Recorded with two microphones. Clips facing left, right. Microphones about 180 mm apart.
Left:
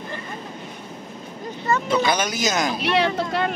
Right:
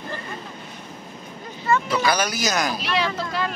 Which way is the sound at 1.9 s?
25° left (ahead or behind).